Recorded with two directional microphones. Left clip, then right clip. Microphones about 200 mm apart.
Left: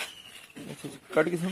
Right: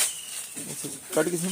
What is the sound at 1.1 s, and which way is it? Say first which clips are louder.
Speech: even; 10° left (ahead or behind).